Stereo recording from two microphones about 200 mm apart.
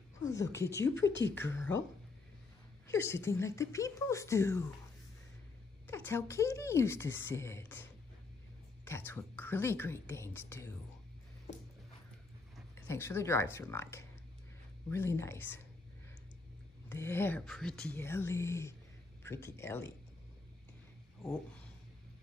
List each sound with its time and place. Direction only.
0.5 s speech: 15° left (ahead or behind)
1.0 s speech: 60° left (ahead or behind)
1.3 s speech: 10° left (ahead or behind)
2.9 s speech: 15° left (ahead or behind)
5.9 s speech: 10° left (ahead or behind)
8.8 s speech: 10° left (ahead or behind)
12.8 s speech: 15° left (ahead or behind)
16.9 s speech: 10° left (ahead or behind)